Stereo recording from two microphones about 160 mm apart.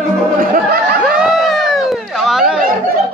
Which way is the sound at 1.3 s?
Centre (ahead or behind).